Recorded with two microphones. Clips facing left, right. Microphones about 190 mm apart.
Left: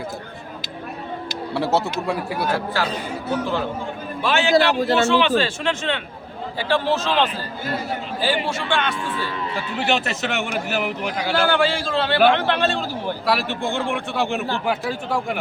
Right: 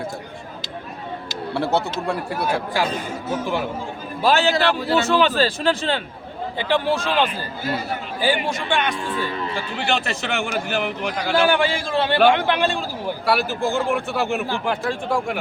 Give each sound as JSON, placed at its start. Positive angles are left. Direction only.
{"t": 1.5, "sound": "a man's voice", "side_deg": 0}
{"t": 2.8, "sound": "a man's voice", "side_deg": -15}
{"t": 4.2, "sound": "speech", "side_deg": -35}
{"t": 4.5, "sound": "a man's voice", "side_deg": 40}
{"t": 4.9, "sound": "speech", "side_deg": -40}
{"t": 6.6, "sound": "a man's voice", "side_deg": -15}
{"t": 9.6, "sound": "a man's voice", "side_deg": 5}
{"t": 11.4, "sound": "a man's voice", "side_deg": -15}
{"t": 13.2, "sound": "a man's voice", "side_deg": 0}